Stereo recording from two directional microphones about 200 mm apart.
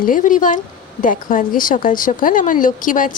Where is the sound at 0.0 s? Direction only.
40° left (ahead or behind).